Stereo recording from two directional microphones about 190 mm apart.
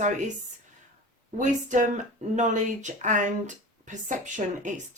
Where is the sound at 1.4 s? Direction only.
40° right (ahead or behind).